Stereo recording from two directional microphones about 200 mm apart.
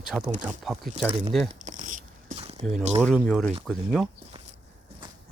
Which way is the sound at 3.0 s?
5° left (ahead or behind).